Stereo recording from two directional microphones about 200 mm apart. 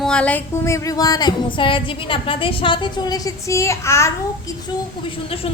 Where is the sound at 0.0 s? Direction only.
5° left (ahead or behind).